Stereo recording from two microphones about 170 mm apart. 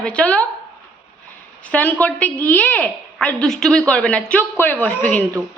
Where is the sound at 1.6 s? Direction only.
10° left (ahead or behind).